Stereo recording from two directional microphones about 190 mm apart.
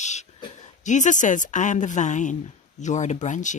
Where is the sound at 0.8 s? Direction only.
40° left (ahead or behind).